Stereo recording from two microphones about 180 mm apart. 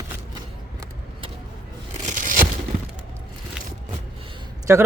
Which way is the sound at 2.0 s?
45° right (ahead or behind).